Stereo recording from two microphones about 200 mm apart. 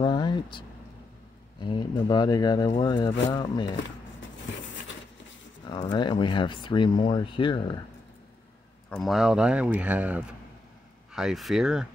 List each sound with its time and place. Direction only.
0.0 s a sound: 20° left (ahead or behind)
1.6 s speech: 20° left (ahead or behind)
5.9 s speech: 25° left (ahead or behind)
8.9 s speech: centre (ahead or behind)